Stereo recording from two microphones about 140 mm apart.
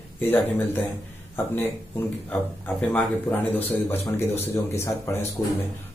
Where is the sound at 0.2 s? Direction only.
15° left (ahead or behind).